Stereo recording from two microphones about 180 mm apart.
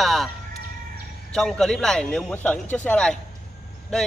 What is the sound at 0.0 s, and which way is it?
Music, centre (ahead or behind).